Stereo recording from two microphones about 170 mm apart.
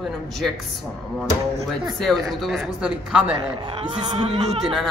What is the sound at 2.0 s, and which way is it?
Speech, centre (ahead or behind).